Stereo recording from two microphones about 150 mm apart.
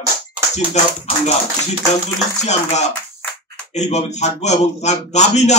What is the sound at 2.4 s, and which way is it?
Speech, 50° left (ahead or behind).